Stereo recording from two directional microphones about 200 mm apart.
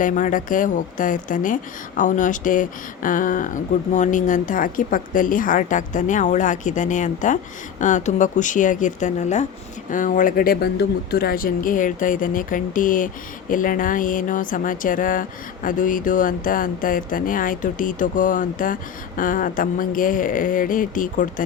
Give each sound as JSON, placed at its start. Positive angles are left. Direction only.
{"t": 0.0, "sound": "speech", "side_deg": 40}